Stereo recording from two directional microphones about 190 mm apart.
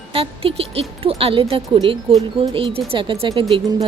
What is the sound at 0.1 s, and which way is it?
Speech, 30° right (ahead or behind).